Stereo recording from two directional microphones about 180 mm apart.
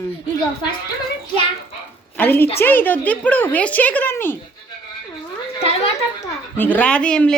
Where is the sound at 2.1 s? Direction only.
10° left (ahead or behind).